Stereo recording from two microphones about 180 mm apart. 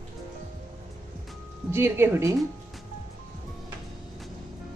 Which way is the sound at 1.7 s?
15° right (ahead or behind).